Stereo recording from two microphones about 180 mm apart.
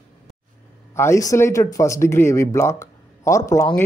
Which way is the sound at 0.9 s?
15° left (ahead or behind).